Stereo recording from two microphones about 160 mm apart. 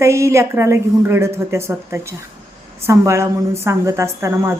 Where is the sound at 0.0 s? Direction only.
15° right (ahead or behind).